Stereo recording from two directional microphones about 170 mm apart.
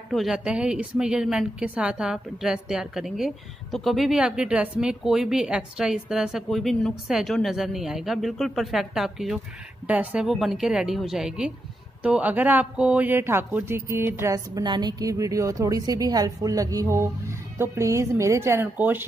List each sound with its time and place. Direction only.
0.1 s a woman's voice: centre (ahead or behind)